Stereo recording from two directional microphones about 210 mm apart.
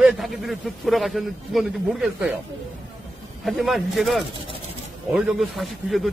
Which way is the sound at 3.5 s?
Centre (ahead or behind).